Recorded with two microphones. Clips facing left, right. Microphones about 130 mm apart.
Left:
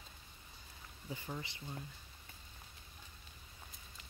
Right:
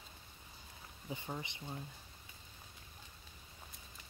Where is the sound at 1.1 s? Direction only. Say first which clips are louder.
Right 1 dB; 20° right (ahead or behind).